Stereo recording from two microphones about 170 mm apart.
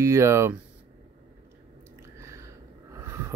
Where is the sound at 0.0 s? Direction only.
15° right (ahead or behind).